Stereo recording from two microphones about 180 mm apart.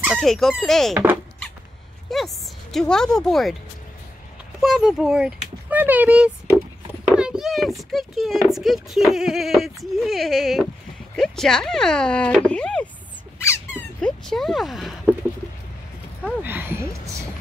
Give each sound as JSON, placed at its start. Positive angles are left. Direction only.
{"t": 0.0, "sound": "speech", "side_deg": 0}
{"t": 0.9, "sound": "speech", "side_deg": -10}
{"t": 2.0, "sound": "speech", "side_deg": 0}
{"t": 4.6, "sound": "speech", "side_deg": 0}
{"t": 13.4, "sound": "squeak", "side_deg": 15}
{"t": 14.0, "sound": "speech", "side_deg": 0}
{"t": 16.4, "sound": "speech", "side_deg": -10}